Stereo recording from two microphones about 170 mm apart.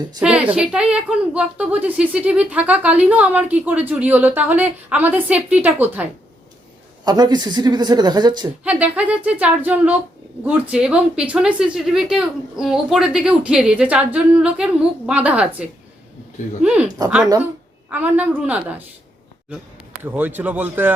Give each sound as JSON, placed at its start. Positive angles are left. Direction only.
{"t": 0.2, "sound": "a woman's voice", "side_deg": -10}
{"t": 7.0, "sound": "speech", "side_deg": -25}
{"t": 8.6, "sound": "a woman's voice", "side_deg": -5}
{"t": 17.0, "sound": "speech", "side_deg": -20}
{"t": 17.4, "sound": "a woman's voice", "side_deg": -10}
{"t": 20.0, "sound": "a woman's voice", "side_deg": -10}